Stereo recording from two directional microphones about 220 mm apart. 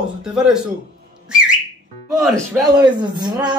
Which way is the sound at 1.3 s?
5° right (ahead or behind).